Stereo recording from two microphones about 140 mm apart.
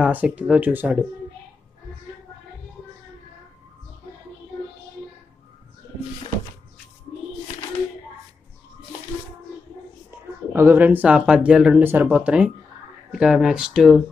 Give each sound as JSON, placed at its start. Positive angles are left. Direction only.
{"t": 0.0, "sound": "speech", "side_deg": -10}
{"t": 10.5, "sound": "speech", "side_deg": -15}